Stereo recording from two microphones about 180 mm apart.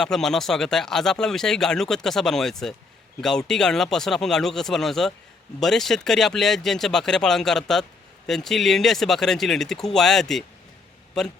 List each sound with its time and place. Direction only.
0.0 s speech: 5° left (ahead or behind)